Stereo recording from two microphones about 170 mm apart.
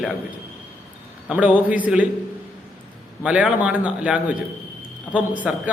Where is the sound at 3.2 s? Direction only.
5° right (ahead or behind).